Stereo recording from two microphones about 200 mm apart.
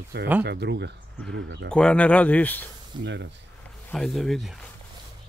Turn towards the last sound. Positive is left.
turn(degrees=0)  # may be behind; listen again after turning